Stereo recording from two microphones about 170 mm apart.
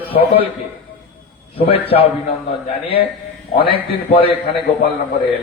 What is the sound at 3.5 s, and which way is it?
Speech, 30° left (ahead or behind).